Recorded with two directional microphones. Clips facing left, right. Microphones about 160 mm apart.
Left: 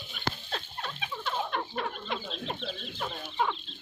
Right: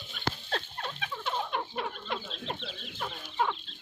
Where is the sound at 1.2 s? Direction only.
10° right (ahead or behind).